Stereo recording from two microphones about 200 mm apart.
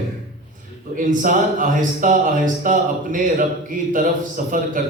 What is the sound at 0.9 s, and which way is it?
Speech, 40° right (ahead or behind).